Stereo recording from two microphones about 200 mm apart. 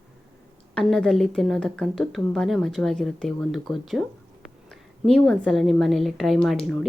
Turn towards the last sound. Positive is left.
turn(degrees=5)  # may be behind; listen again after turning